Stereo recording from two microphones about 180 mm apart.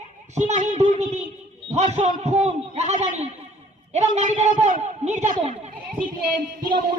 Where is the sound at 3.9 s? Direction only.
40° right (ahead or behind).